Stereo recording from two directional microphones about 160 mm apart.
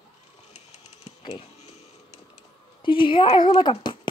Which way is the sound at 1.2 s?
40° left (ahead or behind).